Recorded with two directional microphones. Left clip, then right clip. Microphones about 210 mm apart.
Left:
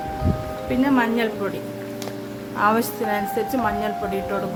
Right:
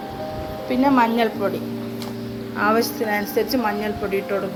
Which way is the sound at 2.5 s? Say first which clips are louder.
Even; 5° left (ahead or behind).